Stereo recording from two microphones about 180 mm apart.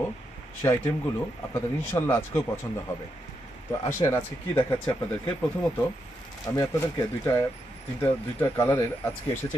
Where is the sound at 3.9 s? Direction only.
15° left (ahead or behind).